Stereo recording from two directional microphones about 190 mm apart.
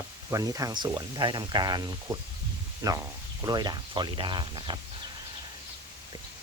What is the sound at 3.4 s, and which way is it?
Speech, 20° right (ahead or behind).